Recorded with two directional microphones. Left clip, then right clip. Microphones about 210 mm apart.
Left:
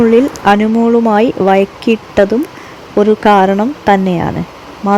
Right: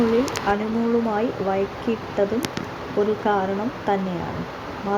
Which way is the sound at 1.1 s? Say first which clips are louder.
Left 13 dB; 60° left (ahead or behind).